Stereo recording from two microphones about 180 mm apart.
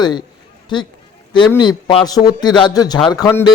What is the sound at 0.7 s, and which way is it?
A man's voice, 25° left (ahead or behind).